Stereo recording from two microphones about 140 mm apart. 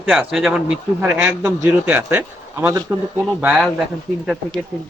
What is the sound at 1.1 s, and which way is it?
A man's voice, 20° right (ahead or behind).